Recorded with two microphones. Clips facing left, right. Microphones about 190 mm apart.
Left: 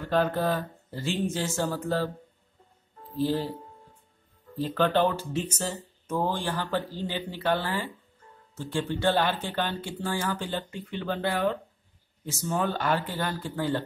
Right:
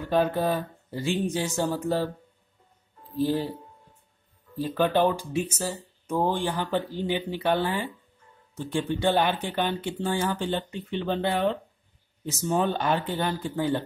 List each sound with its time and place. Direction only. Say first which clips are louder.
0.0 s speech: right 2 dB; 15° right (ahead or behind)
3.2 s speech: right 2 dB; 15° right (ahead or behind)
4.6 s speech: right 1 dB; 15° right (ahead or behind)